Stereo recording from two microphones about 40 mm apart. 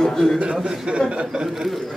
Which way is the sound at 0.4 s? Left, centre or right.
Right.